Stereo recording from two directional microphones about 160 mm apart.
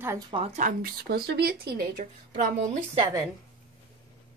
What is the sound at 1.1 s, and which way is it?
Speech, 85° right.